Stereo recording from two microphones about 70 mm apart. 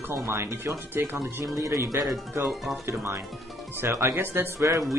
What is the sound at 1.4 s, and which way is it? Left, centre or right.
Speech, right.